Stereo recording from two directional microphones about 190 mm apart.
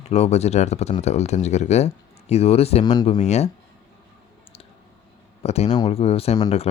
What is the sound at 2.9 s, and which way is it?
Speech, 20° left (ahead or behind).